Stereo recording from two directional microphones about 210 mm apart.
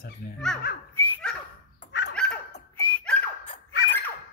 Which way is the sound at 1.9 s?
55° left (ahead or behind).